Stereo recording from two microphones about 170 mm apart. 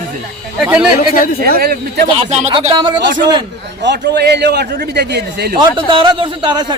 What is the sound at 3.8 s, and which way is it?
A man's voice, 80° right.